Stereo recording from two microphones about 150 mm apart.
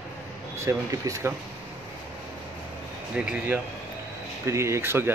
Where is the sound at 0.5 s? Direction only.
20° right (ahead or behind).